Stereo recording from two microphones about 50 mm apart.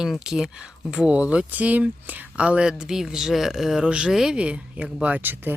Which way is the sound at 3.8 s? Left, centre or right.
Right.